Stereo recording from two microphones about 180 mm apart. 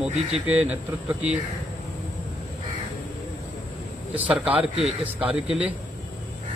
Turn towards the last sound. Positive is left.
turn(degrees=-5)  # may be behind; listen again after turning